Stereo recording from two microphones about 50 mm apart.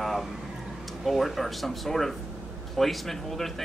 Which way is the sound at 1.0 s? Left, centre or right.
Centre.